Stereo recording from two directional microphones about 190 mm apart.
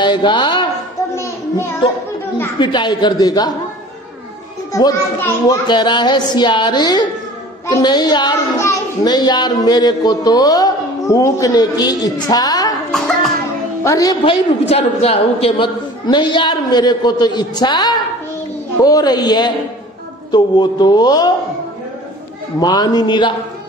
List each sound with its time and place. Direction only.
0.0 s a sound: 25° left (ahead or behind)
1.1 s child singing: 15° left (ahead or behind)
2.6 s a child's voice: 25° left (ahead or behind)
4.7 s a child's voice: 15° left (ahead or behind)
12.9 s music: centre (ahead or behind)
13.8 s a child's voice: 20° left (ahead or behind)
22.6 s a child's voice: 20° left (ahead or behind)